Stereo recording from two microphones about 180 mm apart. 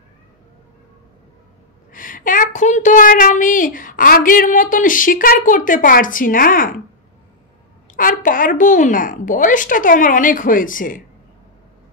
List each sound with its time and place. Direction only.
1.9 s a woman's voice: 50° left (ahead or behind)
7.9 s a woman's voice: 50° left (ahead or behind)